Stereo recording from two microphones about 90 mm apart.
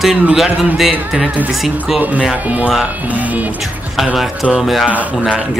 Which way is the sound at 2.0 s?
15° right (ahead or behind).